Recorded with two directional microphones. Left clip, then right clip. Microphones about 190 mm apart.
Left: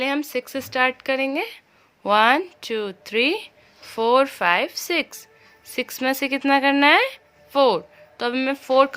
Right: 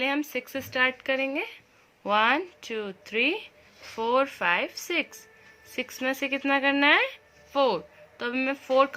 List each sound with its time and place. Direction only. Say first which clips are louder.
0.0 s speech: left 4 dB; 35° left (ahead or behind)